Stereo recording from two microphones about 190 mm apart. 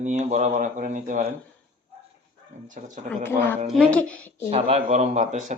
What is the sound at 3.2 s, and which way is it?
A woman's voice, 10° left (ahead or behind).